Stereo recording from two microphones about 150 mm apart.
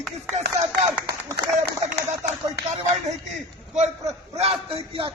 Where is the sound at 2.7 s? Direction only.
50° right (ahead or behind).